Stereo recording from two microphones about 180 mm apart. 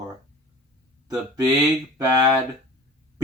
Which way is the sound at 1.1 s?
20° right (ahead or behind).